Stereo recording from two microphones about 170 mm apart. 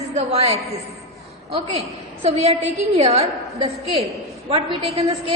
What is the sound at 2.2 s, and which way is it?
A woman's voice, 35° right (ahead or behind).